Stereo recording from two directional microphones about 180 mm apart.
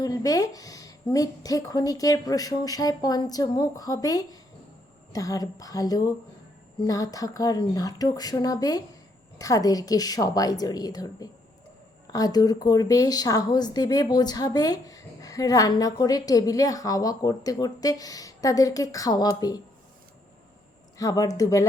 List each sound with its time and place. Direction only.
0.0 s speech: 20° left (ahead or behind)
21.0 s speech: 20° left (ahead or behind)